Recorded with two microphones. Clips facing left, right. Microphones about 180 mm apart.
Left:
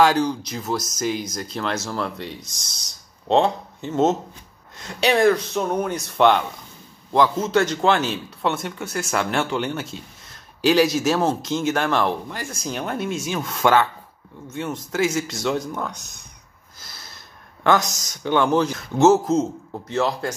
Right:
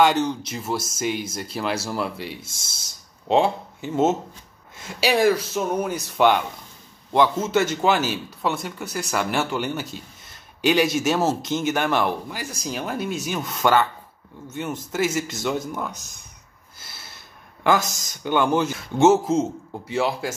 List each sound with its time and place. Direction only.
0.0 s a man's voice: centre (ahead or behind)
16.8 s a sound: 5° right (ahead or behind)
17.6 s a man's voice: 5° right (ahead or behind)